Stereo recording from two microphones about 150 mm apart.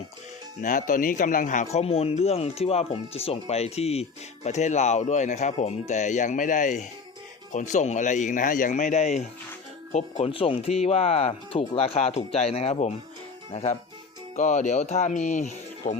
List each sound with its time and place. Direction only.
0.6 s speech: 60° left (ahead or behind)
1.7 s speech: 45° left (ahead or behind)